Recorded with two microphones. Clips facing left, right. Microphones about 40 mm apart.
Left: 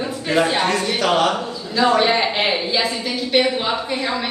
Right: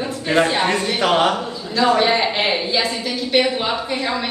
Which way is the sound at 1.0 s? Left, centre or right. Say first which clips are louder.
Right 1 dB; right.